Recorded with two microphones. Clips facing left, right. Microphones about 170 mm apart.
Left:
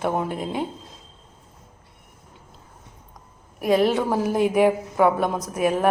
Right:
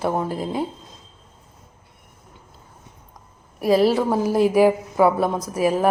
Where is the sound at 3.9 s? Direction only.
Centre (ahead or behind).